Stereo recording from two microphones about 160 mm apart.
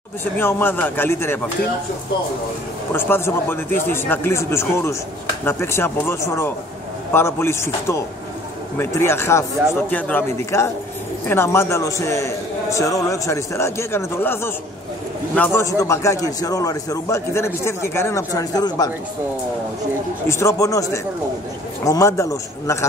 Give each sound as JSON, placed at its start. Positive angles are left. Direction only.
{"t": 0.2, "sound": "a man's voice", "side_deg": 15}
{"t": 2.9, "sound": "a man's voice", "side_deg": 15}
{"t": 15.6, "sound": "a man's voice", "side_deg": 20}
{"t": 20.2, "sound": "a man's voice", "side_deg": 15}